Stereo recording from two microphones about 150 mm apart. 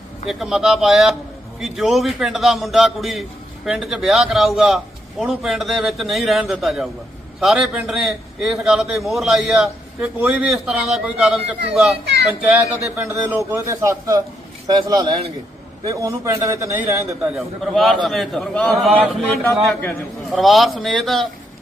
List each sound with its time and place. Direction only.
0.3 s a man's voice: centre (ahead or behind); by 14.2 s 20° right (ahead or behind)
14.7 s speech: 30° right (ahead or behind)
15.8 s a man's voice: 20° right (ahead or behind)
17.3 s a man's voice: centre (ahead or behind)